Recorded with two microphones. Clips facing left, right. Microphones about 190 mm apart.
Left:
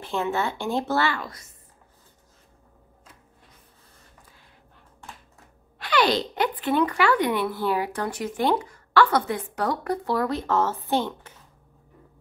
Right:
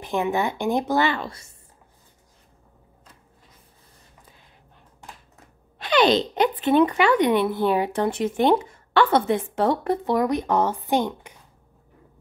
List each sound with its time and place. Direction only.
0.0 s speech: 15° right (ahead or behind)
5.8 s speech: 20° right (ahead or behind)